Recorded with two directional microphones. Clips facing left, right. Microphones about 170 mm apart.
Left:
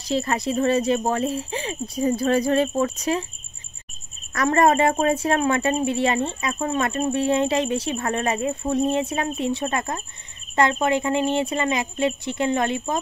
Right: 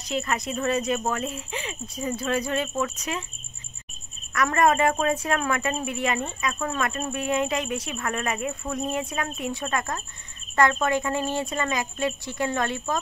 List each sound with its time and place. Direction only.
0.0 s speech: 30° left (ahead or behind)
4.3 s speech: 30° left (ahead or behind)